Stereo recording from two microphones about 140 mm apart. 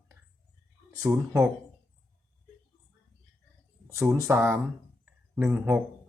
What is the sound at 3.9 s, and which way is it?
Speech, 20° right (ahead or behind).